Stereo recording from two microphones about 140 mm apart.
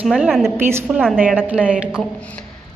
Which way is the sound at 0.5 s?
15° right (ahead or behind).